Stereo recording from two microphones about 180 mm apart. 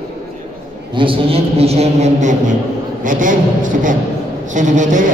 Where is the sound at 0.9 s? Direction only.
30° right (ahead or behind).